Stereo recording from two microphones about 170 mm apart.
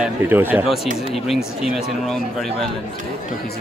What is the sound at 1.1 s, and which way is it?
A man's voice, centre (ahead or behind).